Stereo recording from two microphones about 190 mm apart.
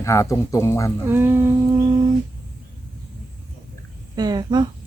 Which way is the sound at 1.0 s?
10° right (ahead or behind).